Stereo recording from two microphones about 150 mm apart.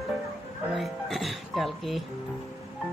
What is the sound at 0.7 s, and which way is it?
Music, centre (ahead or behind).